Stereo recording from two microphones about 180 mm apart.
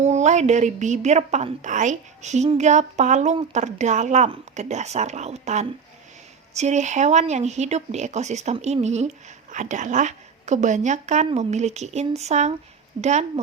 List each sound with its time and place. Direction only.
0.0 s a woman's voice: 40° right (ahead or behind)